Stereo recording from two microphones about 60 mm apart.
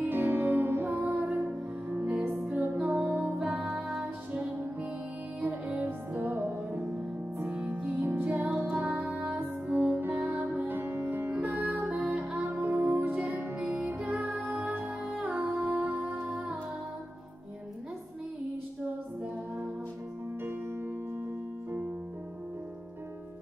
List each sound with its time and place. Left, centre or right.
0.0 s music: right
0.9 s music: right
8.8 s music: centre
9.1 s music: right
10.7 s music: right
11.8 s music: centre
12.4 s music: right